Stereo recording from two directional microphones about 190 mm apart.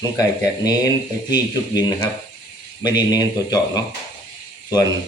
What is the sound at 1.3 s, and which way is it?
Speech, 20° left (ahead or behind).